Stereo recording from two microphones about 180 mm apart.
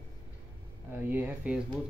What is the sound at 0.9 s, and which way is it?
Speech, 10° right (ahead or behind).